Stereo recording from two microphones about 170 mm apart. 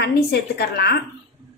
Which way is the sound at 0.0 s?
70° left (ahead or behind).